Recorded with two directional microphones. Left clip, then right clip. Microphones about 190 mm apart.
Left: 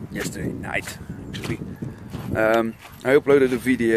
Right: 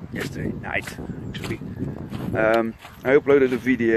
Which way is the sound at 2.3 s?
25° left (ahead or behind).